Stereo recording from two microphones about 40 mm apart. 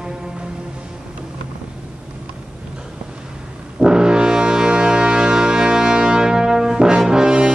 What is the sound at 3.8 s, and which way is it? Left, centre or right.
Brass instrument, centre.